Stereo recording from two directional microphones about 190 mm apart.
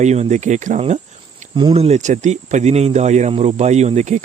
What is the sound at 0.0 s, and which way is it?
Speech, 35° right (ahead or behind).